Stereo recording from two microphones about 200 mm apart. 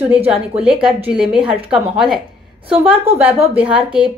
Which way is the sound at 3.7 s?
5° right (ahead or behind).